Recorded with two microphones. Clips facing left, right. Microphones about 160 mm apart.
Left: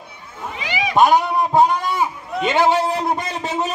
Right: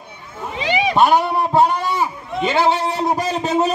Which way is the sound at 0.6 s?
30° right (ahead or behind).